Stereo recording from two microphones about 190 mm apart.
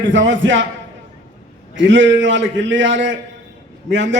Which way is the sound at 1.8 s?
75° right (ahead or behind).